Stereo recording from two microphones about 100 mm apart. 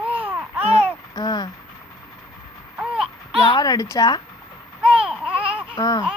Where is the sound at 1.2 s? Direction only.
45° left (ahead or behind).